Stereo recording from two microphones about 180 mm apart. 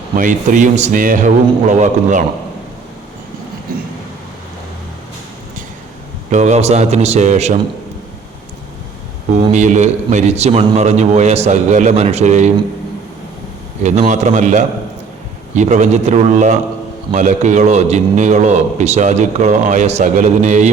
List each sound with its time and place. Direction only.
0.2 s a man's voice: 45° right (ahead or behind)
6.3 s a man's voice: 40° right (ahead or behind)
9.3 s a man's voice: 40° right (ahead or behind)
13.8 s a man's voice: 40° right (ahead or behind)